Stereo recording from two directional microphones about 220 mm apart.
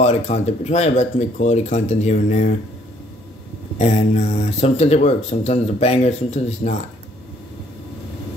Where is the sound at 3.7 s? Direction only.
30° left (ahead or behind).